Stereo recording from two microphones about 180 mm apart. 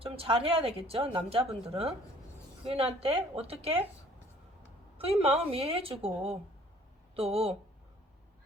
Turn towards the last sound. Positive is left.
turn(degrees=-35)  # may be behind; listen again after turning